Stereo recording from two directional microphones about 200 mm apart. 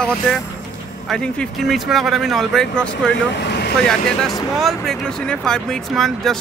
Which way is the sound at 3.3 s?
60° left (ahead or behind).